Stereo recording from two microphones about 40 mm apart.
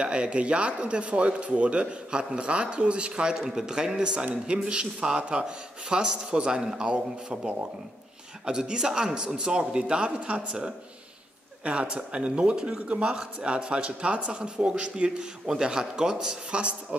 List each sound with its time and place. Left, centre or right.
0.0 s a man's voice: right
3.3 s a man's voice: centre
8.5 s a man's voice: right
11.6 s a man's voice: right
13.0 s a man's voice: right